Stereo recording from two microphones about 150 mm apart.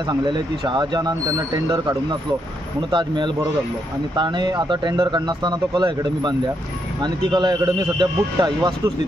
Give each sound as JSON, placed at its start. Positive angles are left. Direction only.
{"t": 0.1, "sound": "speech", "side_deg": -30}